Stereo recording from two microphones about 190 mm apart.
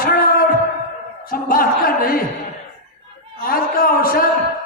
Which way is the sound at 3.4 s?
50° left (ahead or behind).